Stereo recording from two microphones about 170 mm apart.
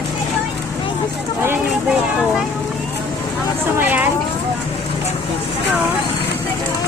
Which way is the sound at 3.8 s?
10° right (ahead or behind).